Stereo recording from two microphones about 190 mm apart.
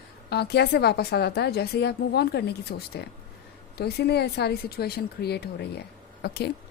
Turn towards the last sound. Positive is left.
turn(degrees=60)  # may be behind; listen again after turning